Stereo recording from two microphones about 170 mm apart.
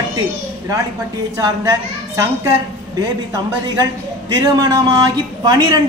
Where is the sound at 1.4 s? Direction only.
20° right (ahead or behind).